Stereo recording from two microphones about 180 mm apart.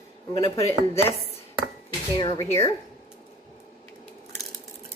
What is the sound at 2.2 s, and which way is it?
Speech, 25° left (ahead or behind).